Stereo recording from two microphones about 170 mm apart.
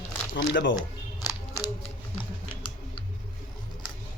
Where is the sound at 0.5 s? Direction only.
90° left.